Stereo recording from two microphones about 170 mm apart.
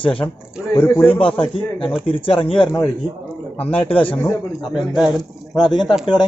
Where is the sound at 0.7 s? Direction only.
10° left (ahead or behind).